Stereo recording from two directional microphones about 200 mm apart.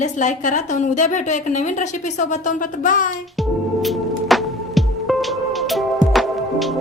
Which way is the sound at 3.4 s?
Centre (ahead or behind).